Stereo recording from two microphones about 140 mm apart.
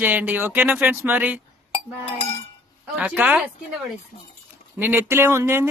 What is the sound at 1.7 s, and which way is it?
Chink, 45° left (ahead or behind).